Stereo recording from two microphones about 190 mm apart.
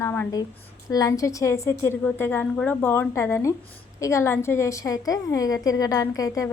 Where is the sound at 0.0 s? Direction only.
15° left (ahead or behind).